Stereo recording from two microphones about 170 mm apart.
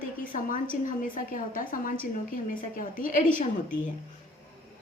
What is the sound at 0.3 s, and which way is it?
A woman's voice, 50° left (ahead or behind).